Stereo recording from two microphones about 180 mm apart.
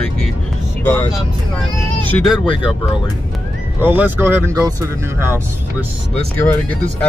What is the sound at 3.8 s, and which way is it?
Speech, 10° right (ahead or behind).